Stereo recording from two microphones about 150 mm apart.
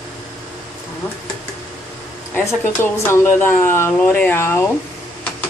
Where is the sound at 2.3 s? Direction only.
15° left (ahead or behind).